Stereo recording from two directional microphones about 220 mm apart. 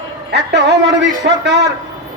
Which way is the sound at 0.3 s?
50° right (ahead or behind).